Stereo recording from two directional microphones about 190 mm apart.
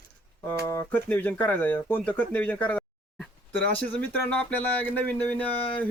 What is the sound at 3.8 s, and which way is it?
Speech, 10° left (ahead or behind).